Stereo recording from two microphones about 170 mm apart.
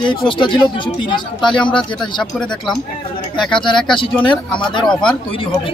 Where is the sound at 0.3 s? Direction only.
30° left (ahead or behind).